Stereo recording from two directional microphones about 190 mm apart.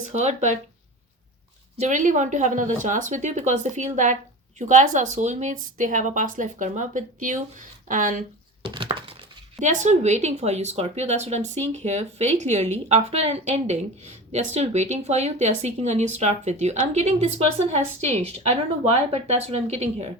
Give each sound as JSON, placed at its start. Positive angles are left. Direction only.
{"t": 0.1, "sound": "speech", "side_deg": -40}
{"t": 1.8, "sound": "speech", "side_deg": -40}
{"t": 8.6, "sound": "a sound", "side_deg": -25}
{"t": 9.6, "sound": "speech", "side_deg": -40}